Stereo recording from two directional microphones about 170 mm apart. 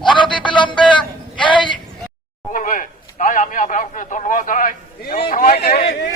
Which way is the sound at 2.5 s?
50° left (ahead or behind).